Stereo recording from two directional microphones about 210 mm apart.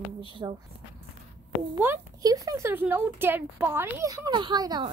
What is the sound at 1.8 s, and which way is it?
A woman's voice, 15° right (ahead or behind).